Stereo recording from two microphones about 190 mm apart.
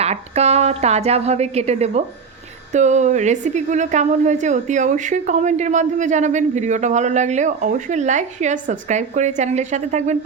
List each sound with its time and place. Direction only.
0.0 s speech: 35° right (ahead or behind)